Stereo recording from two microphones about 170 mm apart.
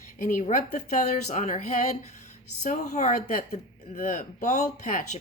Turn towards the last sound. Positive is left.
turn(degrees=45)  # may be behind; listen again after turning